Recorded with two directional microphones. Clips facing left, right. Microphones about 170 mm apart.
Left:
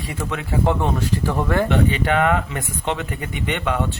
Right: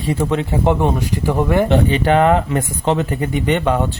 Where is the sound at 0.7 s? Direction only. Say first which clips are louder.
Right 4 dB; 20° right (ahead or behind).